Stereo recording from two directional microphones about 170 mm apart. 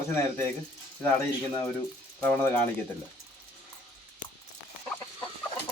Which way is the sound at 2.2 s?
10° left (ahead or behind).